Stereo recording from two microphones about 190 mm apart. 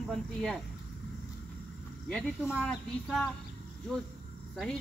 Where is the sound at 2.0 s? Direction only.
10° left (ahead or behind).